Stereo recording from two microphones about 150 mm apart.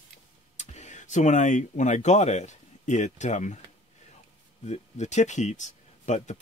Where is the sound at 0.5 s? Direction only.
50° left (ahead or behind).